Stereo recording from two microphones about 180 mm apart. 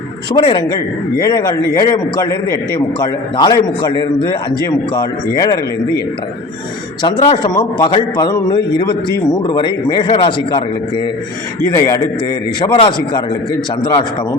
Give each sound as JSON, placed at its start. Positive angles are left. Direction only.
{"t": 0.3, "sound": "a man's voice", "side_deg": 25}
{"t": 7.0, "sound": "a man's voice", "side_deg": 25}